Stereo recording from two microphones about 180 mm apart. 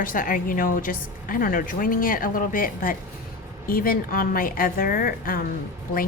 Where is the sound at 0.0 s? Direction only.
50° left (ahead or behind).